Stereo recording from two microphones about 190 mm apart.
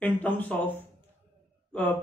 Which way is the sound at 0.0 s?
10° left (ahead or behind).